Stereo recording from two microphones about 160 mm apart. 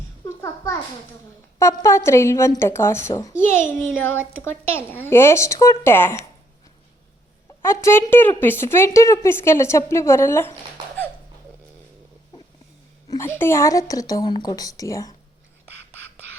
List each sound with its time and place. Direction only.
0.3 s a sound: 15° left (ahead or behind)
1.5 s a woman's voice: 15° left (ahead or behind)
7.6 s a woman's voice: 15° left (ahead or behind)
13.1 s a woman's voice: 15° left (ahead or behind)